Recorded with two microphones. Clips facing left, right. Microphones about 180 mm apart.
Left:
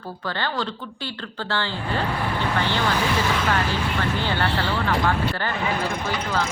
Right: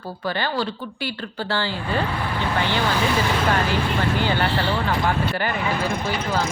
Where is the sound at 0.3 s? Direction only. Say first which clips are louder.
Right 3 dB; 10° right (ahead or behind).